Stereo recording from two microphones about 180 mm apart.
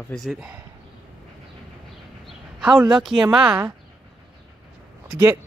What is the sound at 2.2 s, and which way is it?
Speech, 5° right (ahead or behind).